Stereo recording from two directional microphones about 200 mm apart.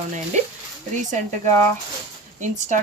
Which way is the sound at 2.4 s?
35° right (ahead or behind).